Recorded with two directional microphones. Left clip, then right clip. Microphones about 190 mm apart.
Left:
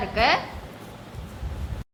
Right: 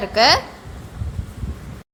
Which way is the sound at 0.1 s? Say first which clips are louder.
Right 7 dB; 45° right (ahead or behind).